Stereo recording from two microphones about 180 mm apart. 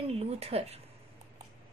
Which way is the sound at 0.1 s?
35° right (ahead or behind).